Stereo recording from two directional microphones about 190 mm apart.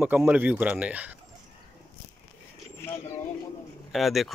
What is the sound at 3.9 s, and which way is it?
Speech, centre (ahead or behind).